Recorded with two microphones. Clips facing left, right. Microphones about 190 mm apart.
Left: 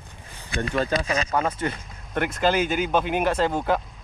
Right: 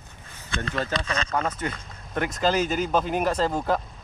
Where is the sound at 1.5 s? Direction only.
30° left (ahead or behind).